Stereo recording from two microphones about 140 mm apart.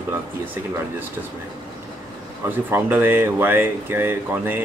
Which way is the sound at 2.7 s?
15° right (ahead or behind).